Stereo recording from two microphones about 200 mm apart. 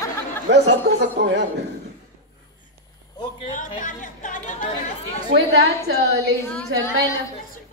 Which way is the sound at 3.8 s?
40° left (ahead or behind).